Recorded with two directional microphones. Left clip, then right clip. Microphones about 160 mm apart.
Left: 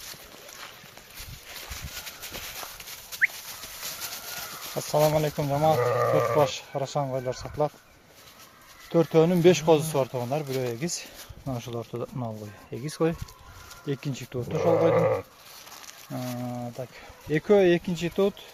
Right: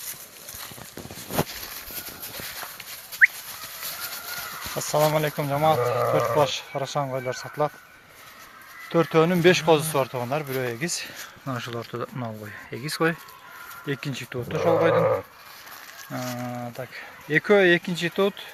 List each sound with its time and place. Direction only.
4.8 s speech: 5° left (ahead or behind)
7.0 s speech: centre (ahead or behind)
7.3 s speech: 10° left (ahead or behind)
8.9 s speech: 10° left (ahead or behind)
11.7 s speech: 20° right (ahead or behind)
12.7 s speech: 15° left (ahead or behind)
16.4 s speech: centre (ahead or behind)
16.9 s speech: 15° left (ahead or behind)